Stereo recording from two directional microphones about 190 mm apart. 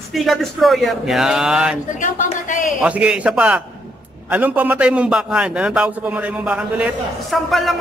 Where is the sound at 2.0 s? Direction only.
40° left (ahead or behind).